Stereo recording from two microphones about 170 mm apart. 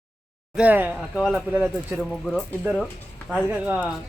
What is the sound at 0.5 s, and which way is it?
Speech, 10° right (ahead or behind).